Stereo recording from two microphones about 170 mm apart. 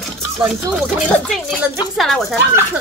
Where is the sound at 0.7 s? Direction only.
Centre (ahead or behind).